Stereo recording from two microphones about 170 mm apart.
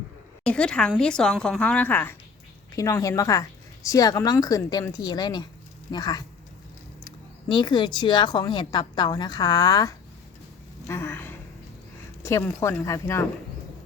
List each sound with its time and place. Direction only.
0.4 s a woman's voice: 5° left (ahead or behind)